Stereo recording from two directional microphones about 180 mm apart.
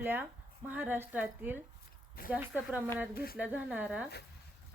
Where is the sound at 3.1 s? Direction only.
55° left (ahead or behind).